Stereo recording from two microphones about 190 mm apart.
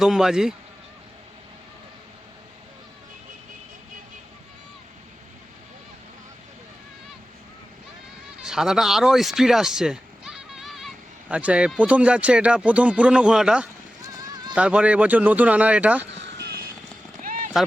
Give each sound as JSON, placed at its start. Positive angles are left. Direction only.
{"t": 0.0, "sound": "speech", "side_deg": -5}
{"t": 8.4, "sound": "speech", "side_deg": -5}
{"t": 14.0, "sound": "clip-clop", "side_deg": -20}
{"t": 14.5, "sound": "speech", "side_deg": -5}
{"t": 16.1, "sound": "vehicle", "side_deg": -65}
{"t": 17.2, "sound": "a sound", "side_deg": -45}